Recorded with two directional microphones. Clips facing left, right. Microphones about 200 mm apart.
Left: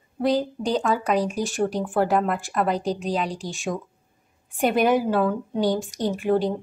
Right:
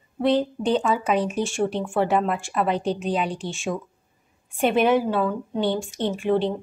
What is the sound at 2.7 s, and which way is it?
Speech, 40° left (ahead or behind).